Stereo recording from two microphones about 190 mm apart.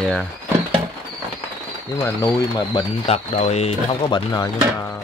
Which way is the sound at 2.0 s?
20° left (ahead or behind).